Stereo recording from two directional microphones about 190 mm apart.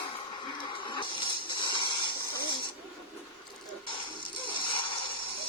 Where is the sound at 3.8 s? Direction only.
25° left (ahead or behind).